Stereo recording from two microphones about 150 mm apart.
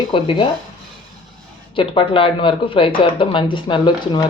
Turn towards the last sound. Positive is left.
turn(degrees=30)  # may be behind; listen again after turning